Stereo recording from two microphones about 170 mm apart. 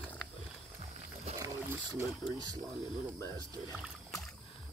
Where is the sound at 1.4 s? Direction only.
20° right (ahead or behind).